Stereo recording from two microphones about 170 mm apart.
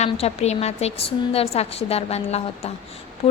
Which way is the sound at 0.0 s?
40° left (ahead or behind).